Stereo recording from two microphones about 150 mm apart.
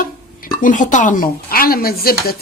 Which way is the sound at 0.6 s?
60° left (ahead or behind).